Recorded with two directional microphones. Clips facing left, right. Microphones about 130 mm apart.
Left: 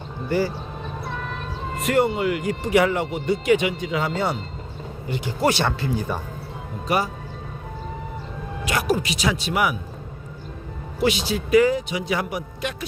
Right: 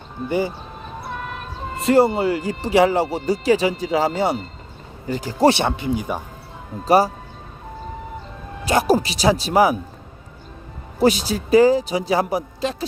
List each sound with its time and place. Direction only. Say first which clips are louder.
0.3 s speech: right 1 dB; 20° right (ahead or behind)
1.7 s speech: right 5 dB; 30° right (ahead or behind)
5.0 s speech: right 6 dB; 40° right (ahead or behind)
5.5 s speech: right 4 dB; 20° right (ahead or behind)
6.8 s speech: right 8 dB; 35° right (ahead or behind)
8.6 s speech: right 6 dB; 30° right (ahead or behind)
11.0 s speech: right 4 dB; 40° right (ahead or behind)